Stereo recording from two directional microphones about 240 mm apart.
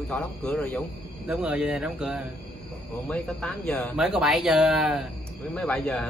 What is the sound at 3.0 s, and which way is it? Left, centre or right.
Speech, centre.